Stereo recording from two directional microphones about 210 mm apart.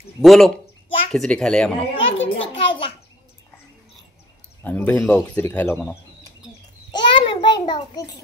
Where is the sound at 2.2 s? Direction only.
25° left (ahead or behind).